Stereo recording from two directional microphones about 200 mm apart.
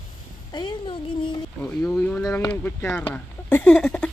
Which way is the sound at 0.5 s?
20° left (ahead or behind).